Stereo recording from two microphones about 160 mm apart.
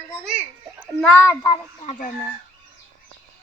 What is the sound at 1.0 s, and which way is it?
Speech, 10° left (ahead or behind).